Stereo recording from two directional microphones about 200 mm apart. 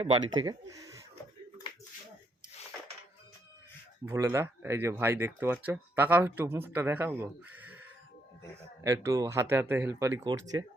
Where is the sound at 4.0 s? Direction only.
15° right (ahead or behind).